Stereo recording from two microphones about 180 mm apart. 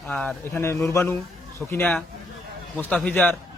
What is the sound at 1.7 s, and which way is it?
A man's voice, 5° left (ahead or behind).